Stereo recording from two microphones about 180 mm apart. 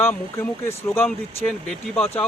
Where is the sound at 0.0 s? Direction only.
10° left (ahead or behind).